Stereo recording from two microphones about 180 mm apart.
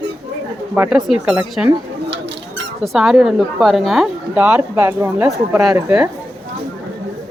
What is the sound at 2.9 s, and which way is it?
Speech, centre (ahead or behind).